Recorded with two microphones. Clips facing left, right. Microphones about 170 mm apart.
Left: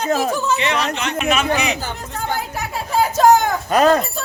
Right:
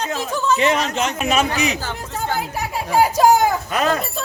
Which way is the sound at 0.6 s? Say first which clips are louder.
Right 2 dB; 45° right (ahead or behind).